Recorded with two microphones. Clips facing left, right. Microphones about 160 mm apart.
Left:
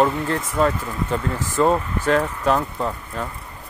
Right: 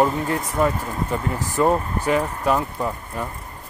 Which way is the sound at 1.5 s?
15° right (ahead or behind).